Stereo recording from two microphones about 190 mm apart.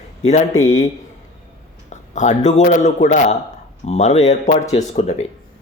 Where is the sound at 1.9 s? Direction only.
40° left (ahead or behind).